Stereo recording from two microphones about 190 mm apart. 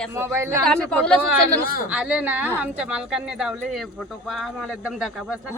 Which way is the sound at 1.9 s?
5° right (ahead or behind).